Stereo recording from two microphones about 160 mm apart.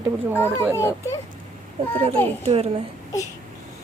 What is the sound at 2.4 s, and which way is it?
Speech, 40° right (ahead or behind).